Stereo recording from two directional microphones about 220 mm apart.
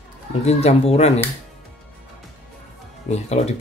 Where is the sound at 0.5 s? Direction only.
30° left (ahead or behind).